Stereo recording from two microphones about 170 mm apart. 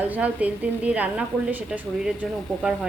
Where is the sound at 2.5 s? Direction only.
5° left (ahead or behind).